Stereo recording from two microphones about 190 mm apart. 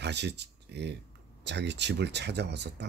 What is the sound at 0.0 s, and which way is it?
Speech, 65° right (ahead or behind).